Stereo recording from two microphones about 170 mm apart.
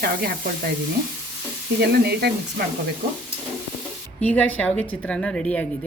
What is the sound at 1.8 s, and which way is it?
Speech, 70° right (ahead or behind).